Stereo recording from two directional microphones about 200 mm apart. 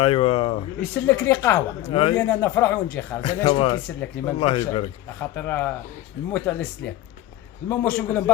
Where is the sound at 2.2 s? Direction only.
10° left (ahead or behind).